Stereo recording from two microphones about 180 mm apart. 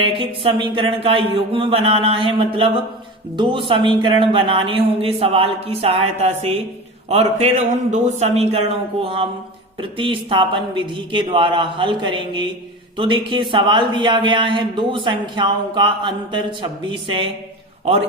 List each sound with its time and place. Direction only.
0.0 s speech: 30° right (ahead or behind)